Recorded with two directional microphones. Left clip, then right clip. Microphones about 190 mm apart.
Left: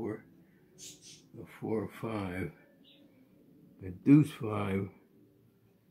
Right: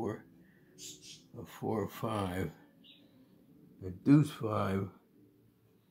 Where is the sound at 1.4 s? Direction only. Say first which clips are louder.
Even; 25° right (ahead or behind).